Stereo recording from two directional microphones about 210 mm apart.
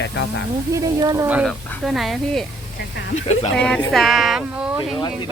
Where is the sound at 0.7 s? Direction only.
15° right (ahead or behind); by 2.5 s centre (ahead or behind).